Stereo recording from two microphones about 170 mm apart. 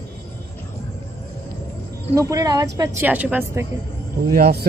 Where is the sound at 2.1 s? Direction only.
20° right (ahead or behind).